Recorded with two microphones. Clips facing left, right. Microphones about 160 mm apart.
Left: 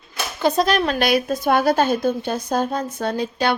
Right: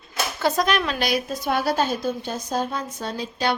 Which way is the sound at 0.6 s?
35° left (ahead or behind).